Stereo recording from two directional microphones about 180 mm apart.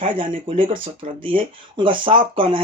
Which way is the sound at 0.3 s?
30° right (ahead or behind).